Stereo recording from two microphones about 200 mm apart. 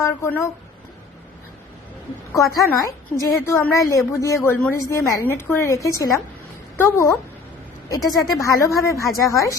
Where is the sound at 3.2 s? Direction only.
15° left (ahead or behind).